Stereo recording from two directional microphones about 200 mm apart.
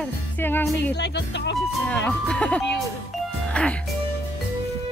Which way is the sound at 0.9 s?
60° left (ahead or behind).